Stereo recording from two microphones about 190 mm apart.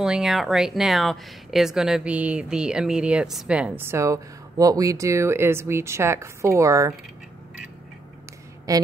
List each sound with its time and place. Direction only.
0.0 s speech: centre (ahead or behind)
8.7 s a woman's voice: 15° right (ahead or behind)